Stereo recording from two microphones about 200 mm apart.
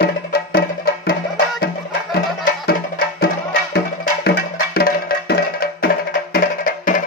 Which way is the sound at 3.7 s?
50° left (ahead or behind).